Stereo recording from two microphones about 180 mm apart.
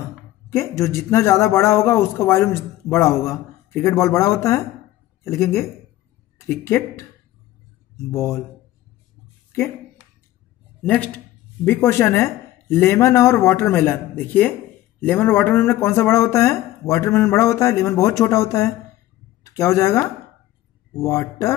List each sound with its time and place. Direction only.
0.5 s speech: 15° left (ahead or behind)
8.1 s speech: 15° left (ahead or behind)
10.8 s speech: 10° left (ahead or behind)